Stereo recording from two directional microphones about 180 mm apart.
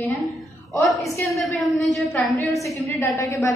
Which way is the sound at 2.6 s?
15° left (ahead or behind).